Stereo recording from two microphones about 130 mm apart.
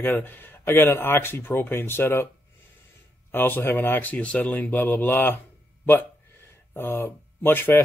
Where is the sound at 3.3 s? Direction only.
15° left (ahead or behind).